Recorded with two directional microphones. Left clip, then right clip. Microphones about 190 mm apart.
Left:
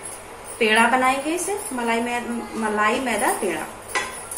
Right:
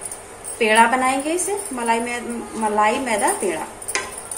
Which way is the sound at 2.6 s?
15° right (ahead or behind).